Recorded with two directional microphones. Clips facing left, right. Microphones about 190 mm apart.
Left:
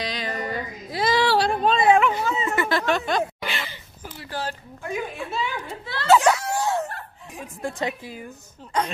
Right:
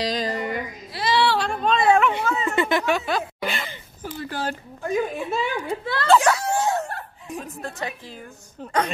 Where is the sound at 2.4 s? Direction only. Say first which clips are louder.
Right 3 dB; 20° right (ahead or behind).